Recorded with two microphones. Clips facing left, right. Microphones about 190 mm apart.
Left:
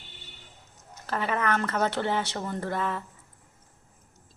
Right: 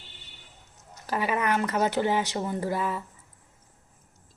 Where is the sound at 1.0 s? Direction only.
10° right (ahead or behind).